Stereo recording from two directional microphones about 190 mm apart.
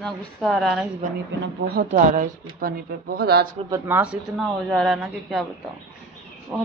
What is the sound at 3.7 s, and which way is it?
Speech, 10° right (ahead or behind).